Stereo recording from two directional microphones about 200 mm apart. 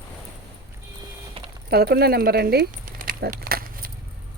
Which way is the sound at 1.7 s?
55° right (ahead or behind).